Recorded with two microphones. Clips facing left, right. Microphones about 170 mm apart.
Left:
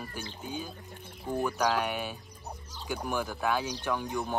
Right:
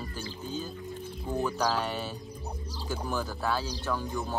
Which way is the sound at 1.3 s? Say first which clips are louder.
Left 1 dB; 10° left (ahead or behind).